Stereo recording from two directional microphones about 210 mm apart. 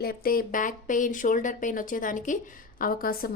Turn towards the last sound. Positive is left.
turn(degrees=45)  # may be behind; listen again after turning